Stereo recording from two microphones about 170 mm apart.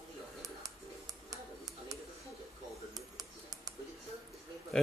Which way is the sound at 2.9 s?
20° right (ahead or behind).